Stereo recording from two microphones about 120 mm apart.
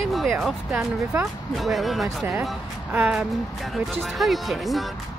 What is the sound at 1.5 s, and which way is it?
Speech, centre (ahead or behind).